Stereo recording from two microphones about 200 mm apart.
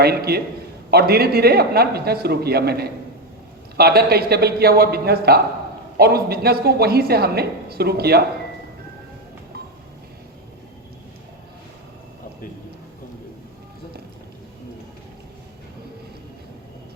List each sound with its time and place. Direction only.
0.0 s a woman's voice: 50° right (ahead or behind)